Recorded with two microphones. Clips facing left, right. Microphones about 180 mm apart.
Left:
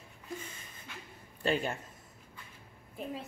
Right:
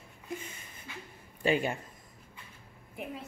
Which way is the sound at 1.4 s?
10° right (ahead or behind).